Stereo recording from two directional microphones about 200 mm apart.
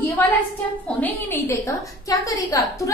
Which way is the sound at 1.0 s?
10° left (ahead or behind).